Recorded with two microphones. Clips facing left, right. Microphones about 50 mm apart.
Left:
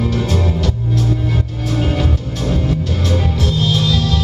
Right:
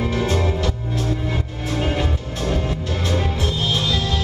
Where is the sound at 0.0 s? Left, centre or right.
Centre.